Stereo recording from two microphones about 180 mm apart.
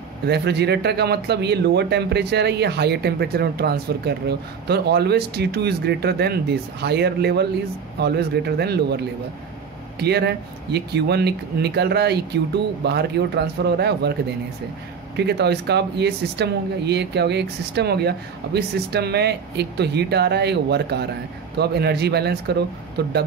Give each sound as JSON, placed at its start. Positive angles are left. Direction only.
{"t": 0.3, "sound": "speech", "side_deg": -65}
{"t": 15.1, "sound": "speech", "side_deg": -70}